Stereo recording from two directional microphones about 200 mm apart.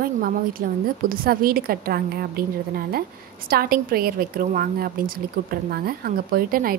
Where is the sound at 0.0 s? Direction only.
45° right (ahead or behind).